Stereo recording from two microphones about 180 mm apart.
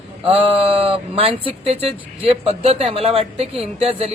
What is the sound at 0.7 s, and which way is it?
A man's voice, 30° right (ahead or behind).